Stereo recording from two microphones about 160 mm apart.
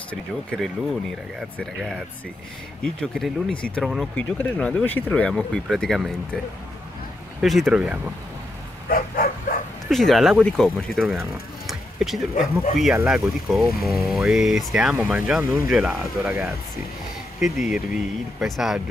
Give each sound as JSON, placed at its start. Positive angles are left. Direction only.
{"t": 0.1, "sound": "speech", "side_deg": 5}
{"t": 7.4, "sound": "speech", "side_deg": 0}
{"t": 8.8, "sound": "bow-wow", "side_deg": 65}
{"t": 9.8, "sound": "speech", "side_deg": 0}
{"t": 11.6, "sound": "a sound", "side_deg": 0}
{"t": 12.7, "sound": "speech", "side_deg": -5}